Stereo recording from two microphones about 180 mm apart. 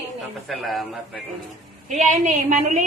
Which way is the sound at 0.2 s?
Centre (ahead or behind).